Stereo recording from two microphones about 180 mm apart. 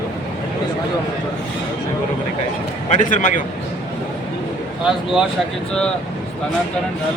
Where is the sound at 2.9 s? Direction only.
45° left (ahead or behind).